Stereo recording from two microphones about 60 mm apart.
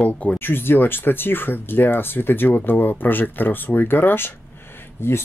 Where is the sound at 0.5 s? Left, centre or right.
Left.